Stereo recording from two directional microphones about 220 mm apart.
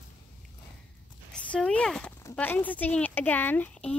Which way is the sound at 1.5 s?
5° left (ahead or behind).